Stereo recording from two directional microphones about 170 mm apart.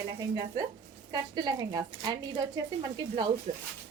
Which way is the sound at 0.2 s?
20° right (ahead or behind).